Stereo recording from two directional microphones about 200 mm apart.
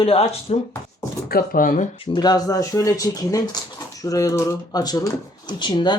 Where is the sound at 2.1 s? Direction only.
20° left (ahead or behind).